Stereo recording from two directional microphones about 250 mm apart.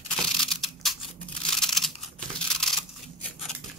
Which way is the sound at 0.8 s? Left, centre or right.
Centre.